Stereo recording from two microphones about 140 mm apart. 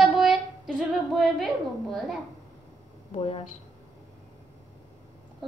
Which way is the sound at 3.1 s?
45° left (ahead or behind).